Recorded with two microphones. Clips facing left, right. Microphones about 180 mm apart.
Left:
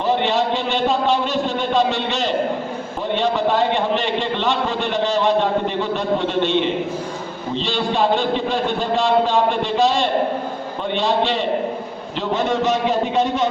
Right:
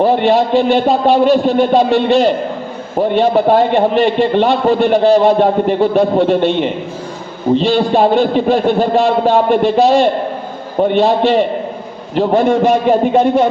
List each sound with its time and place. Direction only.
0.6 s a man's voice: 55° right (ahead or behind)
10.8 s a man's voice: 45° right (ahead or behind)